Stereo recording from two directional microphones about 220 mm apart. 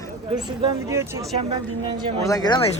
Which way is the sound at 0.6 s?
20° right (ahead or behind).